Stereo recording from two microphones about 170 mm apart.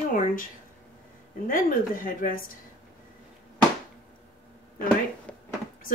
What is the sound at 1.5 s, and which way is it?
Speech, 55° left (ahead or behind).